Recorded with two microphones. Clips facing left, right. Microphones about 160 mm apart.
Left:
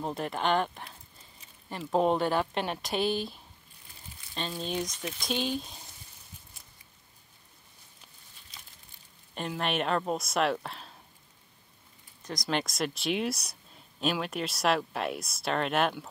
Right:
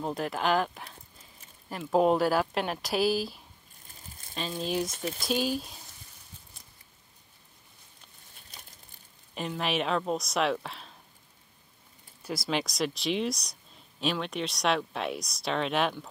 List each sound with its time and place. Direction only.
0.0 s speech: centre (ahead or behind)
4.6 s speech: 5° right (ahead or behind)
4.9 s speech: 40° right (ahead or behind)
5.2 s speech: 5° right (ahead or behind)
9.3 s speech: centre (ahead or behind)
12.2 s speech: 5° right (ahead or behind)